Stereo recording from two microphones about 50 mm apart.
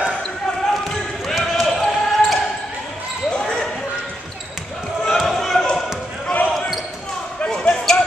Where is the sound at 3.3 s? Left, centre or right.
Centre.